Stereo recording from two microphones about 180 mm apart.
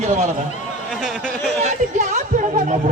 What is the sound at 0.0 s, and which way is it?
Speech, 40° right (ahead or behind).